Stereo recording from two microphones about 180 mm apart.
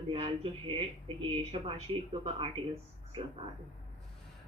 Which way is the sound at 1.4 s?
35° right (ahead or behind).